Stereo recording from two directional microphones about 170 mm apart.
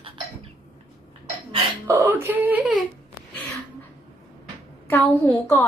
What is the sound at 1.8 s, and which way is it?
Whimper, 20° right (ahead or behind).